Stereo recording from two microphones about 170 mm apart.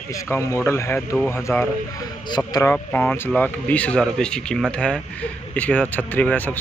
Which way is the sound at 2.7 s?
10° left (ahead or behind).